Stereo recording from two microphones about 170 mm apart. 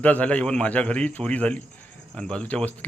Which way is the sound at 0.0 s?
10° left (ahead or behind).